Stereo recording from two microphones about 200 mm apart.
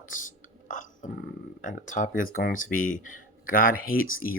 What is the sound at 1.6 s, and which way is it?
Speech, 40° left (ahead or behind).